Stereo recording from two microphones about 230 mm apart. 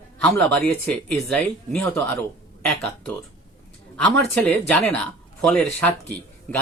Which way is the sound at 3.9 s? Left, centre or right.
Centre.